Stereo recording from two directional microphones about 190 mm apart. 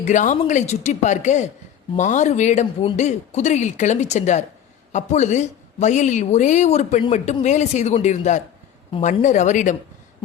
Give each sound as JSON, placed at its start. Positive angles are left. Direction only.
{"t": 0.0, "sound": "speech", "side_deg": 40}